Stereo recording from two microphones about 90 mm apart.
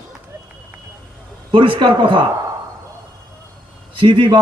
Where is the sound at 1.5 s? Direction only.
65° right (ahead or behind).